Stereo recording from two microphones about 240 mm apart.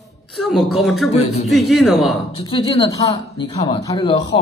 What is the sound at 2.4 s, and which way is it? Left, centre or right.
Speech, left.